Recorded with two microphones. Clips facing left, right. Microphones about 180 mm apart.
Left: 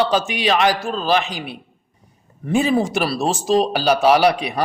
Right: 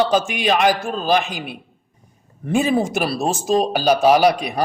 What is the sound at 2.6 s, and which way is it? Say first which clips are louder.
A man's voice: even; 50° right (ahead or behind).